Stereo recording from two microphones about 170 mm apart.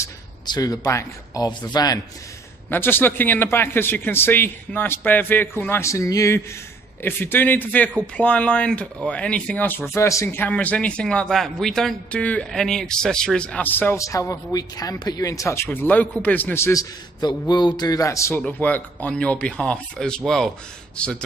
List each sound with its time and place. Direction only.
0.0 s speech: 20° left (ahead or behind)
2.7 s speech: 10° left (ahead or behind)